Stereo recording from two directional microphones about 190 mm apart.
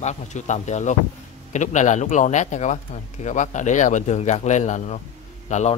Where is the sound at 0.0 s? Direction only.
35° left (ahead or behind).